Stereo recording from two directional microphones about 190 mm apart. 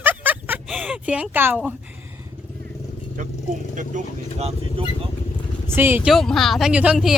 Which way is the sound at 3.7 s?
40° right (ahead or behind).